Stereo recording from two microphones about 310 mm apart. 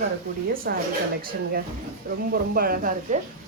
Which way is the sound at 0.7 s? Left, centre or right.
Right.